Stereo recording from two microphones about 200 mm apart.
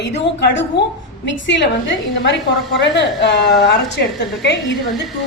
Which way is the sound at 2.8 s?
60° left (ahead or behind).